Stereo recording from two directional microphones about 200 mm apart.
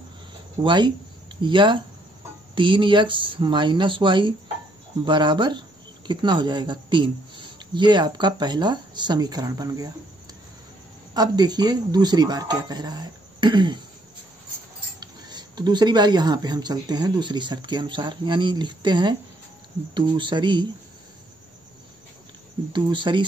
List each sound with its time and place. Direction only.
0.6 s speech: 20° right (ahead or behind)
11.1 s speech: 20° right (ahead or behind)
15.0 s speech: 20° right (ahead or behind)
22.7 s speech: 25° right (ahead or behind)